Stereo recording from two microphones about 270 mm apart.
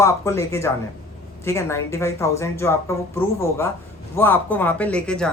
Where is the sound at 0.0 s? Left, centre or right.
Centre.